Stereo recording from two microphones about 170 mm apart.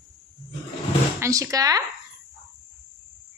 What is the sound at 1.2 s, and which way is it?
Speech, 20° right (ahead or behind).